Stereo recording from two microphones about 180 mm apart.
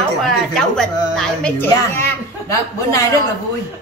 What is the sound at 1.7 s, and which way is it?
A woman's voice, 15° left (ahead or behind).